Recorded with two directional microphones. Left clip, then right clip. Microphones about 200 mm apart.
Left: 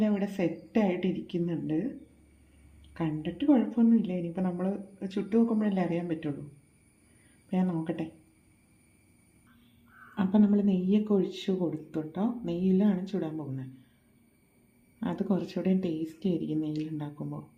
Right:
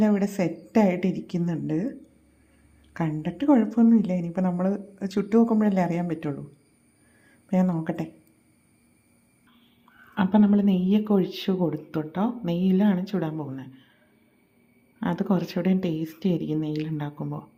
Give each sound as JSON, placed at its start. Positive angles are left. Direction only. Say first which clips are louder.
{"t": 0.0, "sound": "a woman's voice", "louder": "right 5 dB", "side_deg": -20}
{"t": 2.9, "sound": "a woman's voice", "louder": "right 3 dB", "side_deg": -20}
{"t": 7.5, "sound": "a woman's voice", "louder": "right 5 dB", "side_deg": -20}
{"t": 10.2, "sound": "a woman's voice", "louder": "right 5 dB", "side_deg": -15}
{"t": 15.0, "sound": "a woman's voice", "louder": "right 5 dB", "side_deg": -15}